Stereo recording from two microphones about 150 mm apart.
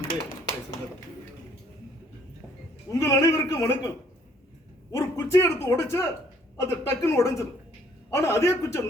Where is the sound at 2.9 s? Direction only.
20° left (ahead or behind).